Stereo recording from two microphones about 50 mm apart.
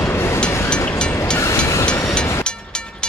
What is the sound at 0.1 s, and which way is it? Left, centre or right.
Vehicle, left.